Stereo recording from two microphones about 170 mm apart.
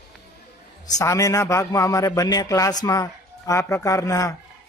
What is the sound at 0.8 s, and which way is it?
A man's voice, 20° left (ahead or behind).